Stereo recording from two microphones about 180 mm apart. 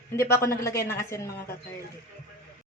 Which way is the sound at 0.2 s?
15° left (ahead or behind).